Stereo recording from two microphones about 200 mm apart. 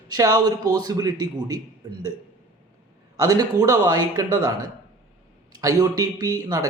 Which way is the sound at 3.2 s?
20° right (ahead or behind).